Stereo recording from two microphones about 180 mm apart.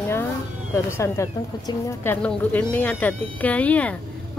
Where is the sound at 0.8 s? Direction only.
15° left (ahead or behind).